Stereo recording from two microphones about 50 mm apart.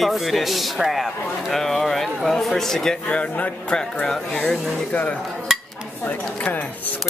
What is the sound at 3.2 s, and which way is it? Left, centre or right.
Speech, left.